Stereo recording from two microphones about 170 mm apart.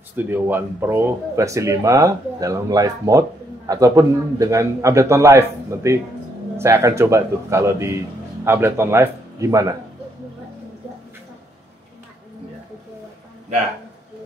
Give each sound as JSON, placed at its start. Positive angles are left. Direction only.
{"t": 0.1, "sound": "speech", "side_deg": -10}